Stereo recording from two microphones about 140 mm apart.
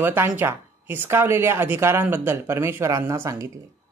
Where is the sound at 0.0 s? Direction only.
15° right (ahead or behind).